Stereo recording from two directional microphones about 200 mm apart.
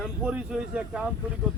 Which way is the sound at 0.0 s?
5° right (ahead or behind).